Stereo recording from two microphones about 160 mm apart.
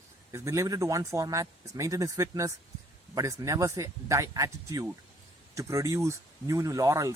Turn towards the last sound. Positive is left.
turn(degrees=-20)  # may be behind; listen again after turning